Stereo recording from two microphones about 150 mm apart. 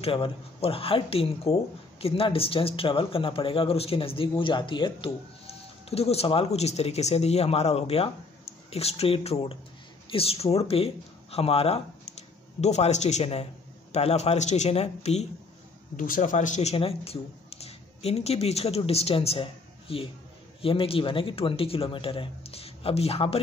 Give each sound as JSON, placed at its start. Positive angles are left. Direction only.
{"t": 0.0, "sound": "a man's voice", "side_deg": 40}
{"t": 16.0, "sound": "speech", "side_deg": 60}
{"t": 16.7, "sound": "speech", "side_deg": 40}